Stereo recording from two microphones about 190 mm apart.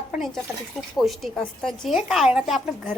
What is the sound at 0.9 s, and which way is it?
A woman's voice, centre (ahead or behind).